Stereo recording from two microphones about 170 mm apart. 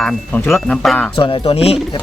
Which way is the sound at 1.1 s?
30° left (ahead or behind).